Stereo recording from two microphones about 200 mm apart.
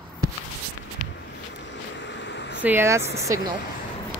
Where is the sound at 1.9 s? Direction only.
65° left (ahead or behind).